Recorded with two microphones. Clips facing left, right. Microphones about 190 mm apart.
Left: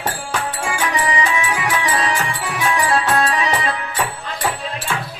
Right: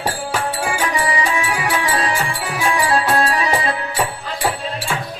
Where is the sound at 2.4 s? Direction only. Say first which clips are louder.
Right 1 dB; 10° right (ahead or behind).